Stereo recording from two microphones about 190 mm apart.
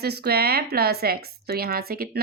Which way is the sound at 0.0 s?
55° right (ahead or behind).